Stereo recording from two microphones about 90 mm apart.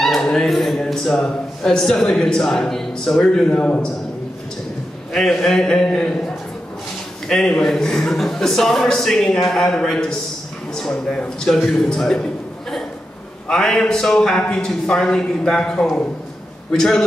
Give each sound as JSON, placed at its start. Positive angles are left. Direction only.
{"t": 0.0, "sound": "a man's voice", "side_deg": 5}
{"t": 5.1, "sound": "a man's voice", "side_deg": 5}
{"t": 13.5, "sound": "a man's voice", "side_deg": 5}